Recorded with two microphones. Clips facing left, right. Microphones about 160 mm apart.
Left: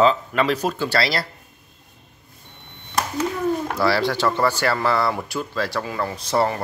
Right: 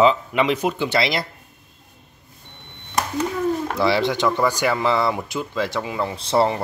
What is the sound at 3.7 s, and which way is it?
Speech, 20° right (ahead or behind).